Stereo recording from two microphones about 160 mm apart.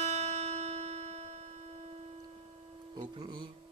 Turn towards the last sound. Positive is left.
turn(degrees=-30)  # may be behind; listen again after turning